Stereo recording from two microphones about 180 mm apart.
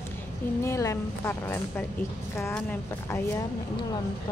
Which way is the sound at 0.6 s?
15° left (ahead or behind).